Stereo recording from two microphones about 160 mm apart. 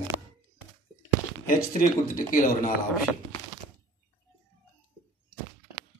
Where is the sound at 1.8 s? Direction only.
55° left (ahead or behind).